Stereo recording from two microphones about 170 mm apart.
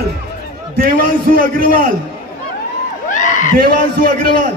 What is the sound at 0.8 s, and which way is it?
A man's voice, 55° right (ahead or behind).